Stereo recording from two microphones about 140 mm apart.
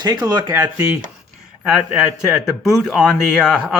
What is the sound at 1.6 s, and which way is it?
Speech, 5° right (ahead or behind).